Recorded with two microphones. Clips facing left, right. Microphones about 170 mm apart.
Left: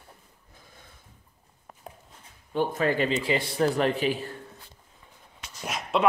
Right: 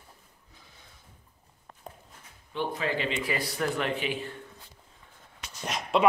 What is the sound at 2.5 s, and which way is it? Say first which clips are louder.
Speech: left 5 dB; 45° left (ahead or behind).